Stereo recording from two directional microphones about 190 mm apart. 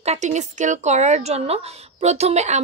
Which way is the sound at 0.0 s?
35° right (ahead or behind).